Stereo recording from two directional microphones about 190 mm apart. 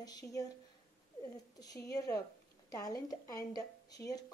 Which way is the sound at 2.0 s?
20° left (ahead or behind).